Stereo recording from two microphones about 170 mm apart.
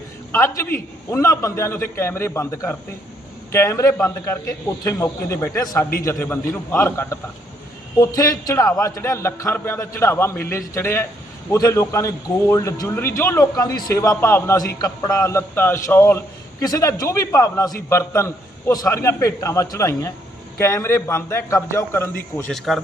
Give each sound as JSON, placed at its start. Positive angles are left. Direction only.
{"t": 0.3, "sound": "a man's voice", "side_deg": 15}
{"t": 22.4, "sound": "a man's voice", "side_deg": 5}